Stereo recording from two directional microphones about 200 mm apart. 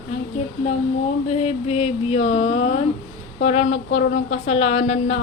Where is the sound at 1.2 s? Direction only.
30° left (ahead or behind).